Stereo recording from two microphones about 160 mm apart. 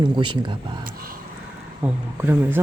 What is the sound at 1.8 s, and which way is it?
Speech, 15° right (ahead or behind).